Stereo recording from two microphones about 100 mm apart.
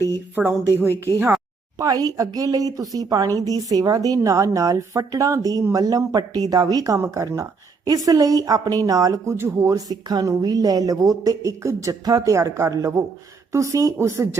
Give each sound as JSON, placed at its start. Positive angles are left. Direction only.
{"t": 0.3, "sound": "speech", "side_deg": -20}
{"t": 1.8, "sound": "speech", "side_deg": -35}
{"t": 7.9, "sound": "speech", "side_deg": -40}